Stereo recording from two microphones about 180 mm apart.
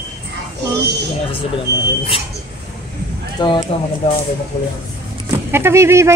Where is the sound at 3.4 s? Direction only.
25° left (ahead or behind).